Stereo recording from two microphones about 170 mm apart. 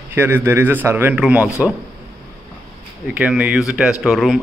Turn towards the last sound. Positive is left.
turn(degrees=0)  # may be behind; listen again after turning